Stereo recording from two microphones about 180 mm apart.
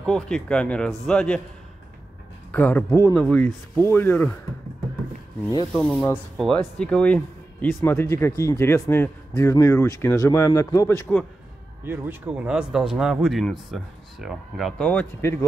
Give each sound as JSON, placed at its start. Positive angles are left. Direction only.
{"t": 0.0, "sound": "speech", "side_deg": 5}
{"t": 2.5, "sound": "a man's voice", "side_deg": 10}
{"t": 5.7, "sound": "a man's voice", "side_deg": 5}
{"t": 11.8, "sound": "speech", "side_deg": -10}